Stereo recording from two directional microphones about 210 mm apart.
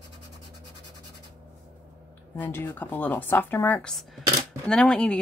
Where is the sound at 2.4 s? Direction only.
10° left (ahead or behind).